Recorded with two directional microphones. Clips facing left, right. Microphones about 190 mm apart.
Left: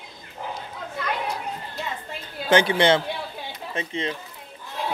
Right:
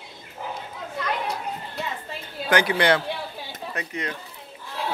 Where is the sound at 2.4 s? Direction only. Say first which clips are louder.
Left 2 dB; 25° left (ahead or behind).